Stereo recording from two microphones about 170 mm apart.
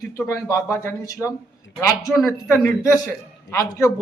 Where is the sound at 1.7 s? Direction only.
90° left.